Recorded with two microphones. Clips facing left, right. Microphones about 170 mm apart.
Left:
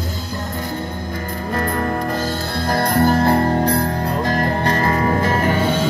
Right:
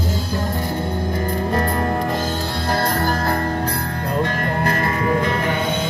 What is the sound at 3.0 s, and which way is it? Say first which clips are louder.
Music: left 6 dB; 25° left (ahead or behind).